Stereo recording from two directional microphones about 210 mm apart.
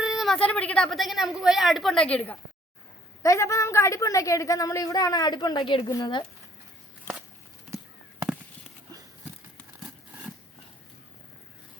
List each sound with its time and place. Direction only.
0.0 s a woman's voice: centre (ahead or behind); by 6.2 s 20° left (ahead or behind)